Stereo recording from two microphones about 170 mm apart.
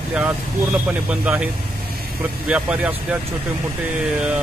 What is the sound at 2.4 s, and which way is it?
Speech, 10° right (ahead or behind).